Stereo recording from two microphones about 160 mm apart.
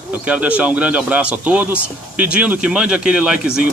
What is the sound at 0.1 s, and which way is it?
Speech, 10° right (ahead or behind).